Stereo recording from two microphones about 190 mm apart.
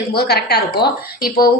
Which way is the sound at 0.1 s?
55° left (ahead or behind).